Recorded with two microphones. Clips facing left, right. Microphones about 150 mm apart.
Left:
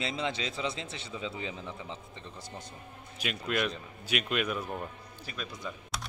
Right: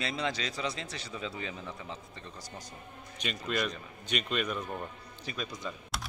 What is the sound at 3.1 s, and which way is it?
Speech, 5° left (ahead or behind).